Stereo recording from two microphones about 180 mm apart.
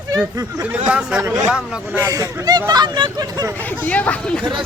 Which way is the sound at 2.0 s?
20° right (ahead or behind).